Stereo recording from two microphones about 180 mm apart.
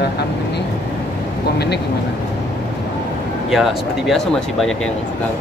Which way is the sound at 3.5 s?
Centre (ahead or behind).